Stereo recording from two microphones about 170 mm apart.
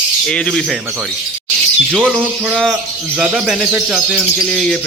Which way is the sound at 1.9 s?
5° right (ahead or behind).